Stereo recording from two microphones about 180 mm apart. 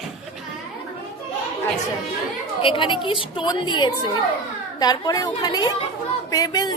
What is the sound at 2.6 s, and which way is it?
A woman's voice, 30° left (ahead or behind).